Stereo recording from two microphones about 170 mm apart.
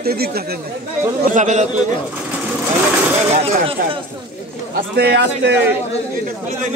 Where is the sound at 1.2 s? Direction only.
50° right (ahead or behind).